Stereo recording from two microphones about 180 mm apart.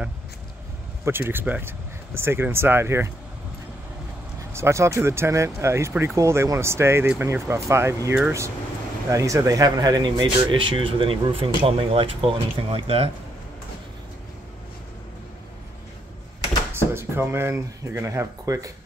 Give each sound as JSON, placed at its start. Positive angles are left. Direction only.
{"t": 1.0, "sound": "speech", "side_deg": -10}
{"t": 4.5, "sound": "speech", "side_deg": -15}
{"t": 16.7, "sound": "speech", "side_deg": -15}